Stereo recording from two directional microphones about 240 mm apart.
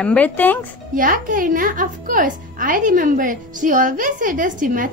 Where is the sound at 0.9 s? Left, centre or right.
Right.